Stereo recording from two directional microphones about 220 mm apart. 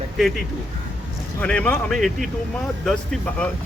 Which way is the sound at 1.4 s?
5° left (ahead or behind).